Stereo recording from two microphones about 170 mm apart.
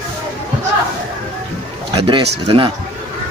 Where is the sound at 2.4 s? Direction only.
30° right (ahead or behind).